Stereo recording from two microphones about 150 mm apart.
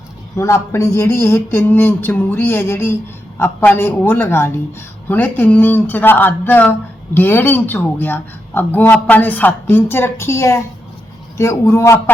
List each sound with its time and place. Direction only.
0.3 s speech: 20° left (ahead or behind)